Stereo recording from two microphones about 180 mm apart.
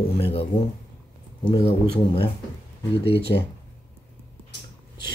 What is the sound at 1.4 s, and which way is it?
Speech, 30° left (ahead or behind).